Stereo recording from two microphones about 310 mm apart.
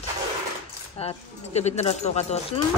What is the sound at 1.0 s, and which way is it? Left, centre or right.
Speech, left.